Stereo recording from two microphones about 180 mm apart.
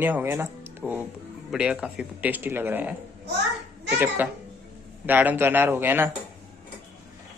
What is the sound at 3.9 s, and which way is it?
A man's voice, 10° right (ahead or behind).